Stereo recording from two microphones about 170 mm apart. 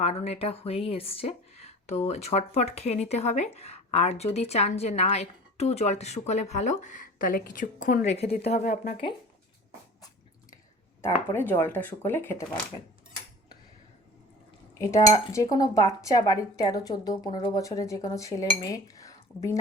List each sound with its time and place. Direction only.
0.0 s a woman's voice: 35° left (ahead or behind)
8.6 s speech: 50° left (ahead or behind)
11.0 s speech: 15° left (ahead or behind)
14.8 s cutlery: 15° left (ahead or behind)
15.3 s speech: 20° left (ahead or behind)